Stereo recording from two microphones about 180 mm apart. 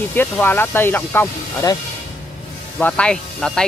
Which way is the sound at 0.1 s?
10° left (ahead or behind).